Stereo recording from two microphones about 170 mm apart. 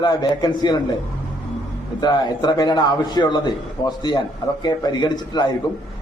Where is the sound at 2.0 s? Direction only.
25° left (ahead or behind).